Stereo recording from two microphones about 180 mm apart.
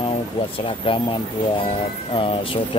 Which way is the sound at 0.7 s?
30° left (ahead or behind).